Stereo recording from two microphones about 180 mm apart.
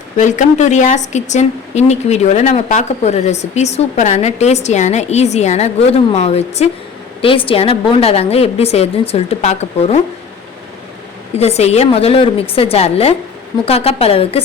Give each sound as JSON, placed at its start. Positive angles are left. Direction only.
{"t": 0.2, "sound": "speech", "side_deg": 40}
{"t": 11.3, "sound": "speech", "side_deg": 35}